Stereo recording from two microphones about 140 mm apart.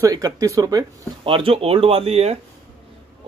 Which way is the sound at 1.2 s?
40° right (ahead or behind).